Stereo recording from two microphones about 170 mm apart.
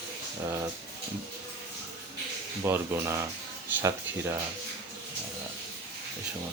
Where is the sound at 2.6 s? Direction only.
15° right (ahead or behind).